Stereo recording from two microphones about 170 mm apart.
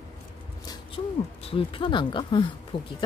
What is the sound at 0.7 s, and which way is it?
Speech, 30° left (ahead or behind).